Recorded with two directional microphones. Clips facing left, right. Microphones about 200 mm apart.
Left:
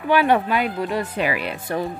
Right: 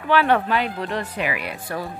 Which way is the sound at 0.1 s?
15° left (ahead or behind).